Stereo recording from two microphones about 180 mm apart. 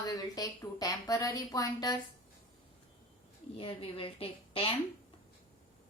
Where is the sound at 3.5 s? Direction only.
30° left (ahead or behind).